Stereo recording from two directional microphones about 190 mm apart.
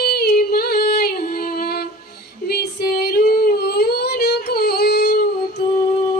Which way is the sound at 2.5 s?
55° left (ahead or behind).